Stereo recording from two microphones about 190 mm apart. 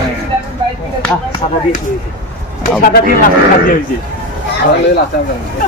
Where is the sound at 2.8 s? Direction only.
45° left (ahead or behind).